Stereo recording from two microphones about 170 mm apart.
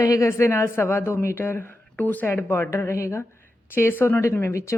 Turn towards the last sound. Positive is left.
turn(degrees=15)  # may be behind; listen again after turning